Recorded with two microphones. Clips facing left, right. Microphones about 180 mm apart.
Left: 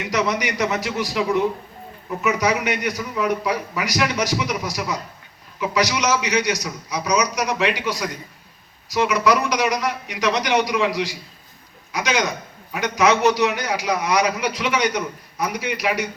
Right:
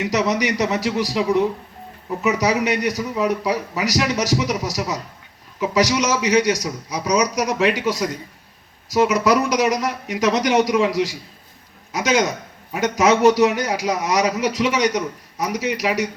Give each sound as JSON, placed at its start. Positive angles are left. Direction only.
{"t": 0.0, "sound": "a man's voice", "side_deg": -35}